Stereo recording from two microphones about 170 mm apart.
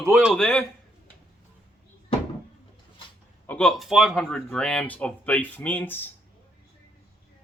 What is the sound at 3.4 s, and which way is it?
Speech, 5° left (ahead or behind).